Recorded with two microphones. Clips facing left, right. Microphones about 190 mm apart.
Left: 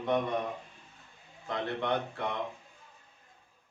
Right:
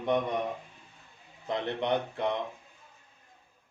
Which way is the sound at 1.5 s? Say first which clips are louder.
Right 2 dB; 20° right (ahead or behind).